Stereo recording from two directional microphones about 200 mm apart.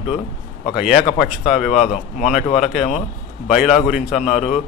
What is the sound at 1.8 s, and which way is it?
Speech, 35° left (ahead or behind).